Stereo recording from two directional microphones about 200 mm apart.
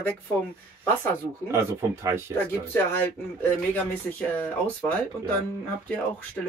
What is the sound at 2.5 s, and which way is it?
Speech, 10° left (ahead or behind).